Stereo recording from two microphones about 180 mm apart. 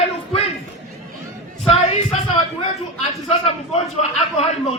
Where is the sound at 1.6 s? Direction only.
35° left (ahead or behind).